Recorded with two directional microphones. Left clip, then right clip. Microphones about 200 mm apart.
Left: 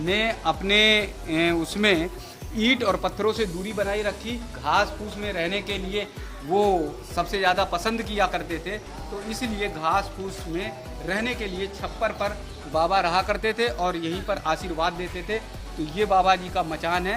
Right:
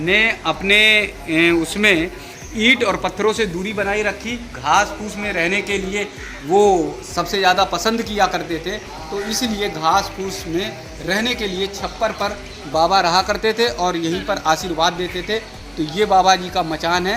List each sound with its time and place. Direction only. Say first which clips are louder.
0.0 s a man's voice: right 8 dB; 65° left (ahead or behind); by 6.1 s 45° left (ahead or behind)
6.5 s speech: right 8 dB; 25° left (ahead or behind)
7.2 s a man's voice: right 7 dB; 10° left (ahead or behind)